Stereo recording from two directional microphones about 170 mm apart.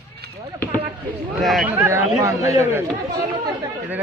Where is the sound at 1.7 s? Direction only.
15° right (ahead or behind).